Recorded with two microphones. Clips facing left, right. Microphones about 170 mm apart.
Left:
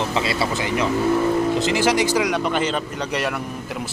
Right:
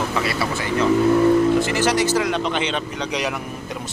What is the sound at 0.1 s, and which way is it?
Speech, 25° left (ahead or behind).